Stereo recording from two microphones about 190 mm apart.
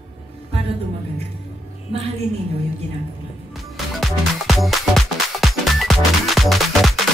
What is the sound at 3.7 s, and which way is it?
Music, centre (ahead or behind).